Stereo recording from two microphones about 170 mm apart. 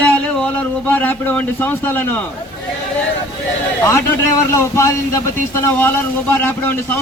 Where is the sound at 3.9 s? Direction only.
15° left (ahead or behind).